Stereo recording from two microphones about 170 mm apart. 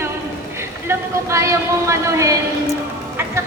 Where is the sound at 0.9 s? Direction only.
15° right (ahead or behind).